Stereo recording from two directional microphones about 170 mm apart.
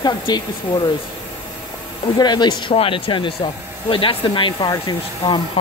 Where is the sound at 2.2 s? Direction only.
25° left (ahead or behind).